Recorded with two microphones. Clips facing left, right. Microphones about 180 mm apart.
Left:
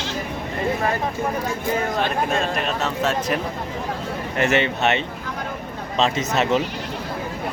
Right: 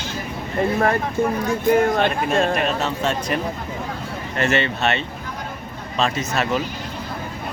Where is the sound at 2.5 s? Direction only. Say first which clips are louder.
Right 2 dB; centre (ahead or behind).